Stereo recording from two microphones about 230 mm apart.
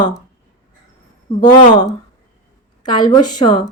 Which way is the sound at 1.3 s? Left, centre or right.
Centre.